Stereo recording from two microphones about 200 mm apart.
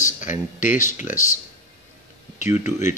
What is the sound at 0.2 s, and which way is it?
Speech, 40° left (ahead or behind).